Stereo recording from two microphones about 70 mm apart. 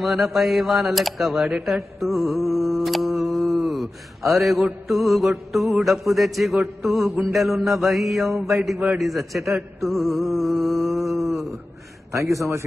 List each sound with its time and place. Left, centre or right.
0.0 s a man's voice: centre
1.7 s mantra: centre
4.8 s a man's voice: centre
12.1 s a man's voice: right